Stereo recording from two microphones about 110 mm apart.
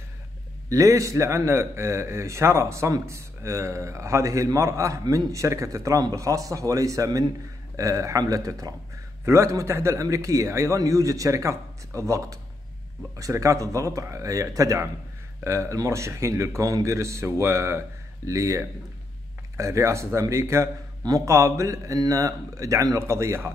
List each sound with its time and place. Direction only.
0.7 s a man's voice: 30° right (ahead or behind)